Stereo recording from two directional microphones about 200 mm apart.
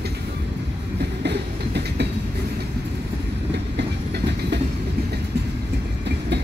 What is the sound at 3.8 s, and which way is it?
Train, 55° right (ahead or behind).